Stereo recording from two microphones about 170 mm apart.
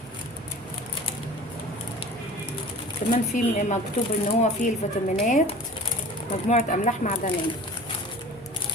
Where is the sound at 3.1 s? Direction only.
45° left (ahead or behind).